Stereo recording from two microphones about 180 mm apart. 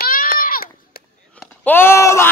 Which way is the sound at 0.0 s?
50° left (ahead or behind).